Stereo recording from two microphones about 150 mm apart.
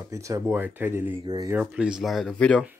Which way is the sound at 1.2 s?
30° right (ahead or behind).